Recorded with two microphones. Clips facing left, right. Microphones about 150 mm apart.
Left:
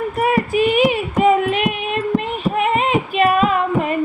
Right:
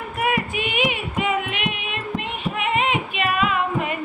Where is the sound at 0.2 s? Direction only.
40° left (ahead or behind).